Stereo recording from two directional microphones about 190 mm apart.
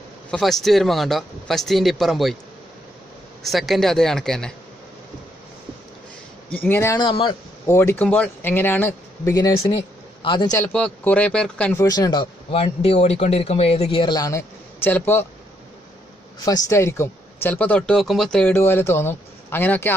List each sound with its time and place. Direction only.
0.3 s speech: centre (ahead or behind)
3.4 s speech: centre (ahead or behind)
6.5 s speech: 10° left (ahead or behind)
7.1 s speech: 25° left (ahead or behind)
7.6 s speech: 15° left (ahead or behind)
9.7 s speech: 25° left (ahead or behind)
10.6 s speech: 5° left (ahead or behind)
11.8 s speech: 20° left (ahead or behind)
16.4 s speech: 20° left (ahead or behind)